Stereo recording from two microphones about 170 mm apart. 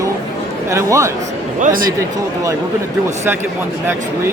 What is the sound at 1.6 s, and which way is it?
Speech, 55° right (ahead or behind).